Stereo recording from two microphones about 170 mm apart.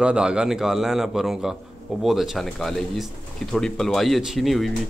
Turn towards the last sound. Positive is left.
turn(degrees=0)  # may be behind; listen again after turning